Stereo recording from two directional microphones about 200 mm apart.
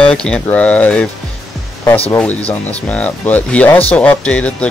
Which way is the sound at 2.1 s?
5° left (ahead or behind).